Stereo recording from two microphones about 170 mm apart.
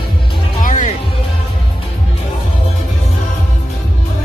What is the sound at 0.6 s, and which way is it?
Music, 50° left (ahead or behind).